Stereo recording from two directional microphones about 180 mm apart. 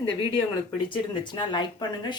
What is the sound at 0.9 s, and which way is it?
Speech, 25° left (ahead or behind).